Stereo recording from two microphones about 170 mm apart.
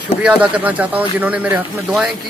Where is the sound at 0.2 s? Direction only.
5° right (ahead or behind).